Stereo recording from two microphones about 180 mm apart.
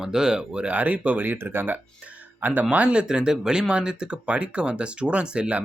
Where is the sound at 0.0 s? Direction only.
5° right (ahead or behind).